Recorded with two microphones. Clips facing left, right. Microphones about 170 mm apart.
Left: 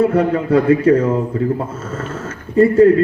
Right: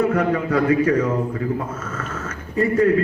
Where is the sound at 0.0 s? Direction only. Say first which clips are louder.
Left 4 dB; 30° left (ahead or behind).